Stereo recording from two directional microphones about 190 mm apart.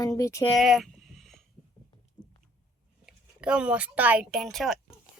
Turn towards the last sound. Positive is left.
turn(degrees=0)  # may be behind; listen again after turning